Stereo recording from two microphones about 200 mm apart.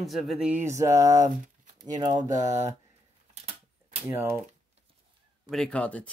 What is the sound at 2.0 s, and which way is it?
Speech, 20° right (ahead or behind).